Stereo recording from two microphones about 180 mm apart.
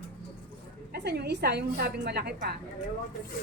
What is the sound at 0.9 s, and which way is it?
A woman's voice, 65° right (ahead or behind).